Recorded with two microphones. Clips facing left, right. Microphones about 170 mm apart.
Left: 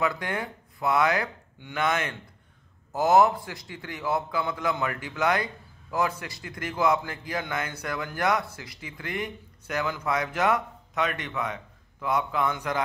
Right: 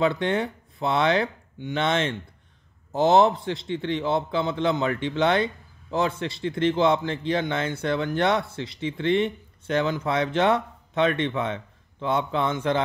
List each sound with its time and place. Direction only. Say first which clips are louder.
0.0 s a man's voice: right 6 dB; 25° right (ahead or behind)